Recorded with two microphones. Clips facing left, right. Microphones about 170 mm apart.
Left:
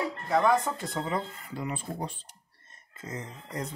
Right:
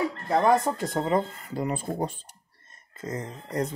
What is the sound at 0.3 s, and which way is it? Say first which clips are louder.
Speech: right 3 dB; 40° right (ahead or behind).